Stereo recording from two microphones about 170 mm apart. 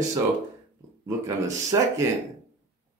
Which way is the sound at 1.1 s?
20° right (ahead or behind).